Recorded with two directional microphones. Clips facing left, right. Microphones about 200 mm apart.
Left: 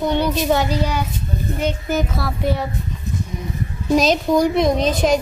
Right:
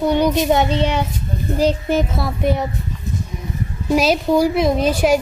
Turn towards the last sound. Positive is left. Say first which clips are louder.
# right 1 dB
turn(degrees=-5)  # may be behind; listen again after turning